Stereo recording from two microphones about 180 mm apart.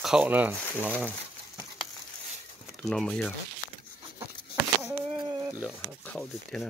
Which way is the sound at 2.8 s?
5° left (ahead or behind).